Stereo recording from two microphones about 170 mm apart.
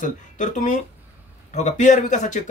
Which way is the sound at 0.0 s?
45° left (ahead or behind).